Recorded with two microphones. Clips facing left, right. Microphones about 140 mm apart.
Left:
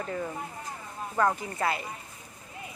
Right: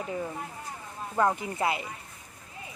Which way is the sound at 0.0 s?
10° right (ahead or behind).